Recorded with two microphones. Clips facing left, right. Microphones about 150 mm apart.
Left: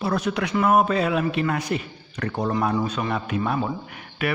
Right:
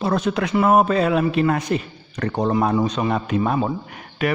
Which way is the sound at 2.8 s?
30° right (ahead or behind).